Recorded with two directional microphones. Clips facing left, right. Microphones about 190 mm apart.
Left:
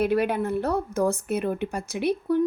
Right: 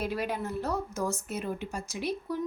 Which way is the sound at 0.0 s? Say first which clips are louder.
Left 9 dB; 60° left (ahead or behind).